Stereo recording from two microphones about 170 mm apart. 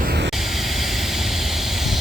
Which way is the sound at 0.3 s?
Centre (ahead or behind).